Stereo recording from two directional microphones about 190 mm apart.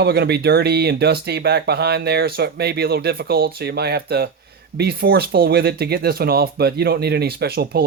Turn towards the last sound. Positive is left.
turn(degrees=-55)  # may be behind; listen again after turning